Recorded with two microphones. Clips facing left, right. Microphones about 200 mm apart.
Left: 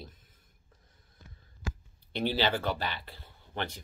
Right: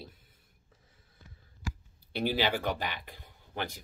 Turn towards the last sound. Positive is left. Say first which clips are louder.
# left 1 dB
turn(degrees=-10)  # may be behind; listen again after turning